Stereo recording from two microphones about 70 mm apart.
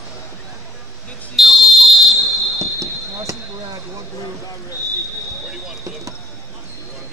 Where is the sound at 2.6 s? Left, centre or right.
Right.